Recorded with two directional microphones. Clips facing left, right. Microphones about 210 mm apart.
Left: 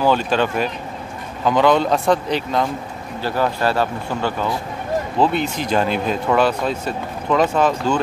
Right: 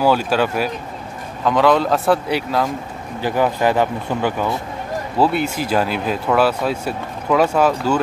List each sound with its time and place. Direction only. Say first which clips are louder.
0.0 s speech: right 1 dB; 5° right (ahead or behind)